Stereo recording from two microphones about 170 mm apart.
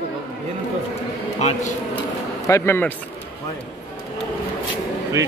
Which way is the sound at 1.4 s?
45° left (ahead or behind).